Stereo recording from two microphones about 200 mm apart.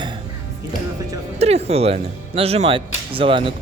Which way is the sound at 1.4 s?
30° right (ahead or behind).